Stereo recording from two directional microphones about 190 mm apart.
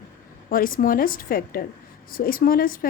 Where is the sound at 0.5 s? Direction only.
50° left (ahead or behind).